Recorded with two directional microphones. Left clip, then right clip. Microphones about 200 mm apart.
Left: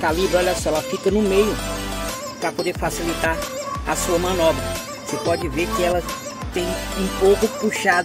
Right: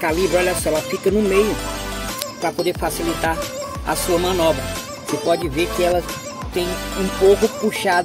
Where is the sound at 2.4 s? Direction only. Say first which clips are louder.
Right 2 dB; 5° right (ahead or behind).